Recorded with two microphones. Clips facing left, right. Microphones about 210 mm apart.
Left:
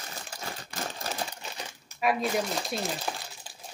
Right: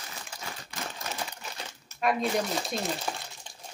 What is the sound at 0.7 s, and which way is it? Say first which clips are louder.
Typewriter: left 2 dB; 35° left (ahead or behind).